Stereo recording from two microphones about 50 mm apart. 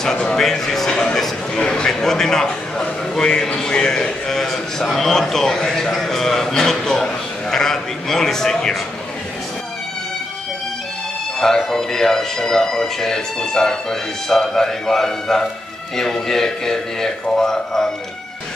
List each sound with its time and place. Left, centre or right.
0.0 s speech: centre
11.3 s speech: centre